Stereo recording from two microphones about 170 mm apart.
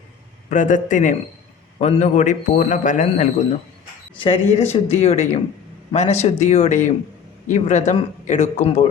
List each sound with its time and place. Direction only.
0.5 s a man's voice: 45° left (ahead or behind)
4.2 s a man's voice: 35° left (ahead or behind)